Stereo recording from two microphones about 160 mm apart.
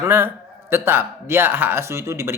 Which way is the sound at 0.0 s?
15° right (ahead or behind).